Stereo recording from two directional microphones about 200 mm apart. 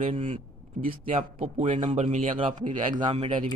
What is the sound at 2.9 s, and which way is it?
Speech, 25° right (ahead or behind).